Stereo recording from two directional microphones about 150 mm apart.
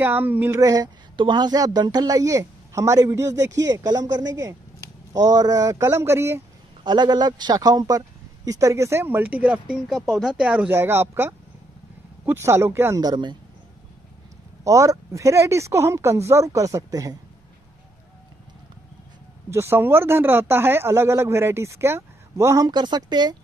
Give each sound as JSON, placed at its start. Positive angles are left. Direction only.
{"t": 0.0, "sound": "speech", "side_deg": -15}
{"t": 0.6, "sound": "a woman's voice", "side_deg": -25}
{"t": 6.8, "sound": "a woman's voice", "side_deg": -30}
{"t": 14.6, "sound": "a woman's voice", "side_deg": -20}
{"t": 19.5, "sound": "speech", "side_deg": -15}